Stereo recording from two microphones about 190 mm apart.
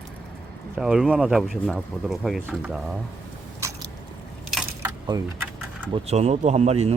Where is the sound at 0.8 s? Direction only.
Centre (ahead or behind).